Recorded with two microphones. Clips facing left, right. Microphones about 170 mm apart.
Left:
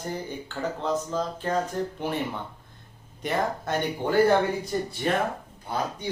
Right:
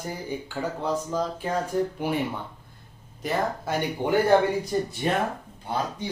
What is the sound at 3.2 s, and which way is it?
Speech, 5° right (ahead or behind).